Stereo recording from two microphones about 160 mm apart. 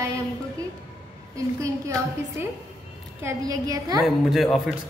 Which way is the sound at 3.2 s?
20° right (ahead or behind).